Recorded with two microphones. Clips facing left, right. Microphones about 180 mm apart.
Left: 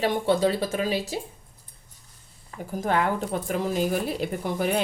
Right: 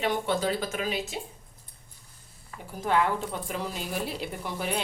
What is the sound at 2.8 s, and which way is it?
Speech, 45° left (ahead or behind).